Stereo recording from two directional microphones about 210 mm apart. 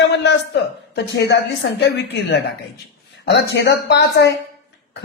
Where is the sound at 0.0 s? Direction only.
50° left (ahead or behind).